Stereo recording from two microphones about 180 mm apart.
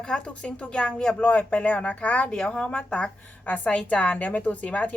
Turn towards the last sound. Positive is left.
turn(degrees=10)  # may be behind; listen again after turning